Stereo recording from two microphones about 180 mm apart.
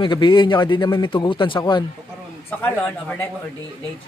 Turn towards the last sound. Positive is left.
turn(degrees=10)  # may be behind; listen again after turning